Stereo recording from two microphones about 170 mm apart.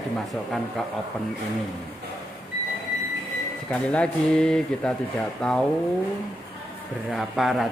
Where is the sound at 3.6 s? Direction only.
5° left (ahead or behind).